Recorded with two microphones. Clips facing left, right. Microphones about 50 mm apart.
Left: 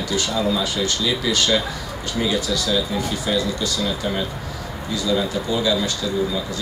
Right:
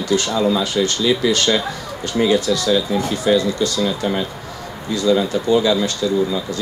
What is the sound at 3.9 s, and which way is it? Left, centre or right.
Speech, centre.